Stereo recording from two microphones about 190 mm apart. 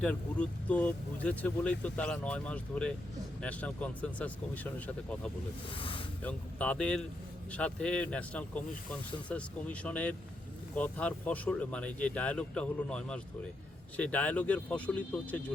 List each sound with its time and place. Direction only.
0.0 s speech: 5° left (ahead or behind)
5.7 s speech: 25° left (ahead or behind)
6.2 s speech: 5° left (ahead or behind)